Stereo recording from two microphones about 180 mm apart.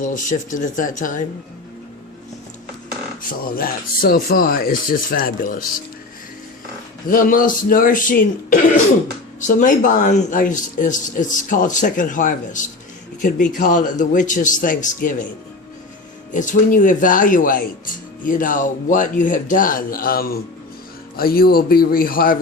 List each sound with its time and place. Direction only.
0.0 s speech: 45° left (ahead or behind)
3.2 s speech: 55° left (ahead or behind)
7.1 s speech: 50° left (ahead or behind)
16.3 s a man's voice: 45° left (ahead or behind)